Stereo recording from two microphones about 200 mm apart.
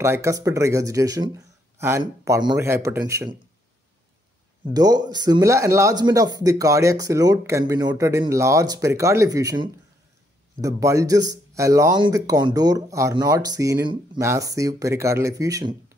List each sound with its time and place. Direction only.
0.0 s speech: 15° right (ahead or behind)
4.7 s speech: 20° right (ahead or behind)